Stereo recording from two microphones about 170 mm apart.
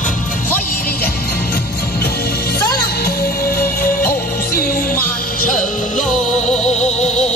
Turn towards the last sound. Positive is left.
turn(degrees=40)  # may be behind; listen again after turning